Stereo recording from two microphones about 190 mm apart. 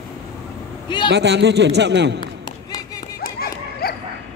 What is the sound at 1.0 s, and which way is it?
A man's voice, 65° right (ahead or behind).